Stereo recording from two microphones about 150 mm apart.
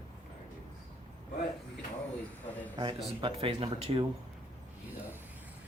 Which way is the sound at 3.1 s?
40° right (ahead or behind).